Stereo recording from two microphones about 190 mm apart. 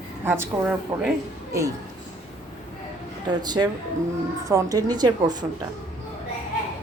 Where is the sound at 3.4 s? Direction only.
20° right (ahead or behind).